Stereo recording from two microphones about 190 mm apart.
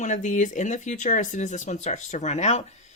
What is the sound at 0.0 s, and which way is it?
Speech, 40° left (ahead or behind).